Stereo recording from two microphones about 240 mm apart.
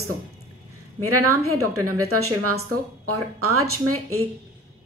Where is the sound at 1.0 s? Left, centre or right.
Right.